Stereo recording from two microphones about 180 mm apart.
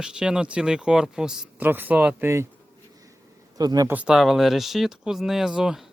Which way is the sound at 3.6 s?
20° right (ahead or behind).